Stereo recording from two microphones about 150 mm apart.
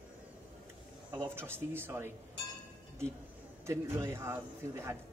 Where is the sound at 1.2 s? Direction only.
15° right (ahead or behind).